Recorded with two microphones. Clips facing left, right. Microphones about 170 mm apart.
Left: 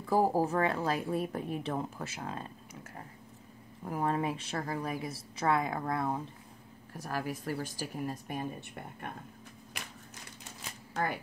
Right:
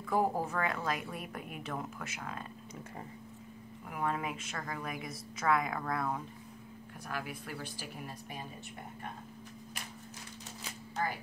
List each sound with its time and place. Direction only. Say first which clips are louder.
0.0 s a woman's voice: left 4 dB; 30° left (ahead or behind)
3.8 s a woman's voice: left 4 dB; 35° left (ahead or behind)
7.0 s a woman's voice: left 5 dB; 40° left (ahead or behind)